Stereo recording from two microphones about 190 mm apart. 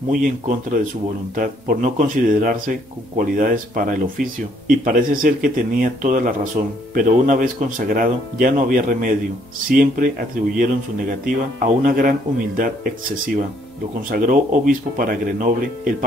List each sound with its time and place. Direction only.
0.1 s speech: 45° right (ahead or behind)
14.1 s speech: 45° right (ahead or behind)